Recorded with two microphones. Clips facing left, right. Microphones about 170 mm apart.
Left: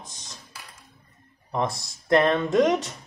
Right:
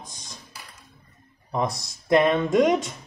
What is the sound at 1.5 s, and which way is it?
Speech, 15° right (ahead or behind).